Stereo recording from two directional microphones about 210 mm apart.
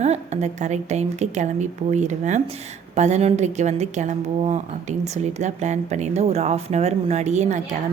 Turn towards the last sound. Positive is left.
turn(degrees=-35)  # may be behind; listen again after turning